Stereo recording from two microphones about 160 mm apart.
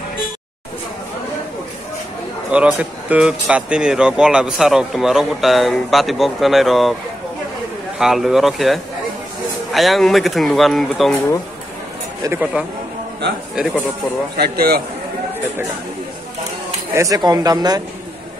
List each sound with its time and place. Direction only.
2.5 s speech: 10° right (ahead or behind)
8.0 s speech: 5° right (ahead or behind)
12.2 s speech: 15° right (ahead or behind)
14.3 s a man's voice: 75° right (ahead or behind)
16.9 s speech: 20° right (ahead or behind)